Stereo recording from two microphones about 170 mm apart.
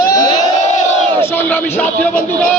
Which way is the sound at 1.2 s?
10° left (ahead or behind).